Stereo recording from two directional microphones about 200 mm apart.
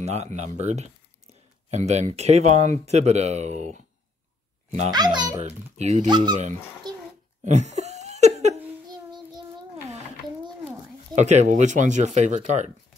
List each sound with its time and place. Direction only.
0.0 s a child's voice: 35° right (ahead or behind)
4.9 s a child's voice: 20° right (ahead or behind)
5.8 s speech: 35° right (ahead or behind)
6.0 s a child's voice: 20° right (ahead or behind)
6.8 s a sound: 20° right (ahead or behind)
7.4 s laughter: 35° right (ahead or behind)
9.8 s a sound: 35° right (ahead or behind)
11.1 s speech: 35° right (ahead or behind)